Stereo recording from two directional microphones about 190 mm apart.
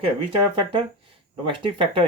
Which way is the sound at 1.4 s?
25° right (ahead or behind).